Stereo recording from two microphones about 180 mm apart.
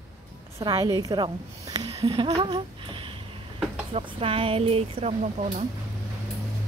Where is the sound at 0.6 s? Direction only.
20° right (ahead or behind); by 5.7 s 35° right (ahead or behind).